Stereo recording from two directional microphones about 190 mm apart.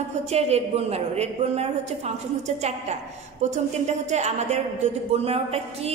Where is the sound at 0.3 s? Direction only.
35° right (ahead or behind).